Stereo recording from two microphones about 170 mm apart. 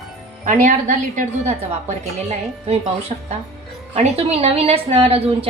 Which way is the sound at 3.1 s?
40° right (ahead or behind).